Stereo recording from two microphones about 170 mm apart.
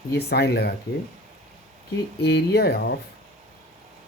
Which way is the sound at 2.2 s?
75° left (ahead or behind).